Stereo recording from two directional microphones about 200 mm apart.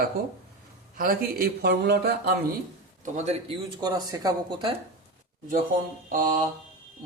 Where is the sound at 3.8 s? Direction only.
20° right (ahead or behind).